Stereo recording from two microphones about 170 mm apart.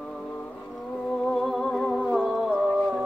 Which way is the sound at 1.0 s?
Centre (ahead or behind).